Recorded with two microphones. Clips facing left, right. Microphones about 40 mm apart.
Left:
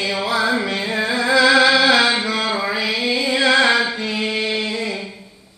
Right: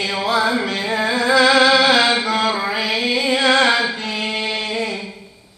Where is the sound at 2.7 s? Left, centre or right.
Right.